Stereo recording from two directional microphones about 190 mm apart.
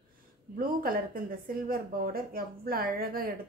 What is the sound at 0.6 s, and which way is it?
Speech, 50° right (ahead or behind).